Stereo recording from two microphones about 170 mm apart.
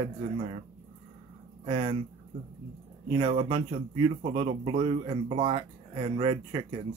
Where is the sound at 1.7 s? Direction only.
30° right (ahead or behind).